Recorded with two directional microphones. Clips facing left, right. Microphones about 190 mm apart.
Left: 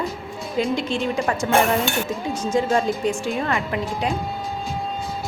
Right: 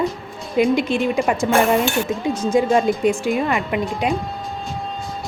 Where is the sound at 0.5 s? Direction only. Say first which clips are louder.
Right 6 dB; 10° right (ahead or behind).